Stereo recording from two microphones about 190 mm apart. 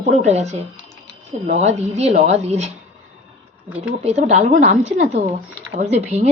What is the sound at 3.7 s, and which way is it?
Speech, 5° right (ahead or behind).